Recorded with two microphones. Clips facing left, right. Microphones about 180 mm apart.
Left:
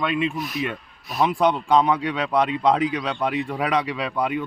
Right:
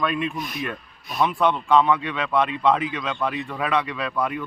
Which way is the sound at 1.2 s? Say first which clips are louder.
Left 1 dB; 30° left (ahead or behind).